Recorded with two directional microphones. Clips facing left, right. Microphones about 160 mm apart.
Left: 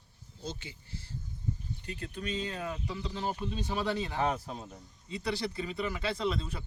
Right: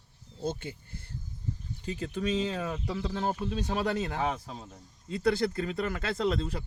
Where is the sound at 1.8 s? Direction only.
90° right.